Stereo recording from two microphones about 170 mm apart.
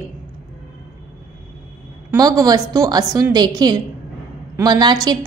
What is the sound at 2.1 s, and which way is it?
A woman's voice, 20° right (ahead or behind).